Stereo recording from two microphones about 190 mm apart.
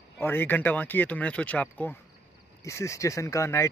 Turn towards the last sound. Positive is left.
turn(degrees=15)  # may be behind; listen again after turning